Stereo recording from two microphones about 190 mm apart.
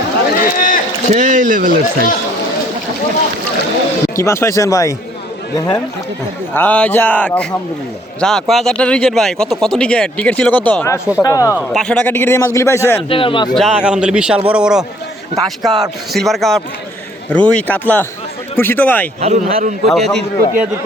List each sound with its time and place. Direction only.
0.3 s run: 45° left (ahead or behind)
1.1 s speech: 40° right (ahead or behind)
4.1 s a man's voice: 15° left (ahead or behind)
6.5 s a man's voice: 10° left (ahead or behind)
11.5 s a man's voice: centre (ahead or behind)
13.1 s a man's voice: 25° left (ahead or behind)
13.5 s a man's voice: centre (ahead or behind)
19.2 s speech: 35° right (ahead or behind)
19.9 s a man's voice: centre (ahead or behind)